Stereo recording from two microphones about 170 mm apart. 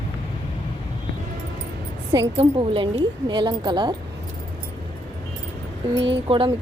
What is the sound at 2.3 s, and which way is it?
Speech, 30° right (ahead or behind).